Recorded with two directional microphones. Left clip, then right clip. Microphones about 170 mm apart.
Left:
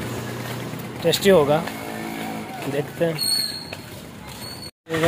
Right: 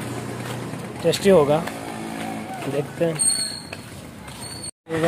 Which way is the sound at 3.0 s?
10° right (ahead or behind).